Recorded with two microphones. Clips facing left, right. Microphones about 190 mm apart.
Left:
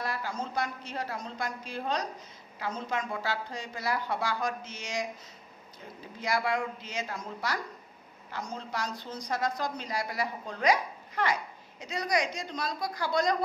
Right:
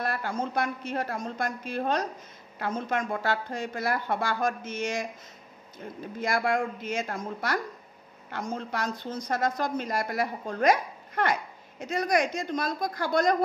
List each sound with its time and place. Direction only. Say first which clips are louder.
0.0 s a woman's voice: right 4 dB; 55° right (ahead or behind)
6.1 s a woman's voice: right 3 dB; 50° right (ahead or behind)